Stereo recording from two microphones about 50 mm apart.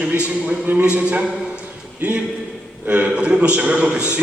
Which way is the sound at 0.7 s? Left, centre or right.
Right.